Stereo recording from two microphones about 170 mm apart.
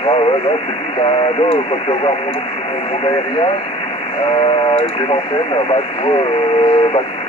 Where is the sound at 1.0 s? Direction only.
30° left (ahead or behind).